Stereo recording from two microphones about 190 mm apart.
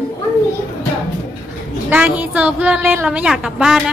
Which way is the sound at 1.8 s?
10° right (ahead or behind).